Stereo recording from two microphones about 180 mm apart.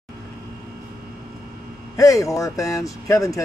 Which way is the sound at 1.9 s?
20° left (ahead or behind).